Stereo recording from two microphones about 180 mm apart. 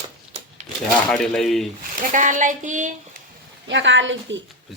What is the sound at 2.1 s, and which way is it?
Child singing, 45° right (ahead or behind).